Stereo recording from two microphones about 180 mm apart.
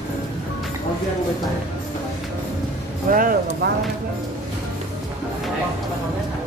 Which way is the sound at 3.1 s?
50° right (ahead or behind).